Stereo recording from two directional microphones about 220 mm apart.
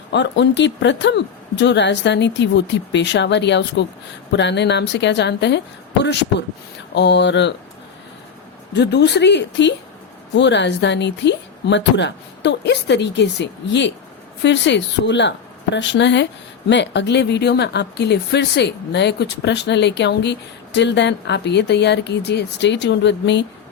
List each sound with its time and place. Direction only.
0.1 s speech: 55° left (ahead or behind)
8.7 s speech: 50° left (ahead or behind)